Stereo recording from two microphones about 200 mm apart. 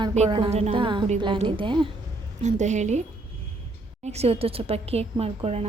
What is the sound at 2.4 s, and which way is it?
Speech, 35° right (ahead or behind).